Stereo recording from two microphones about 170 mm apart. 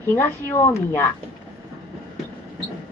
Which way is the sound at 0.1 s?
10° left (ahead or behind).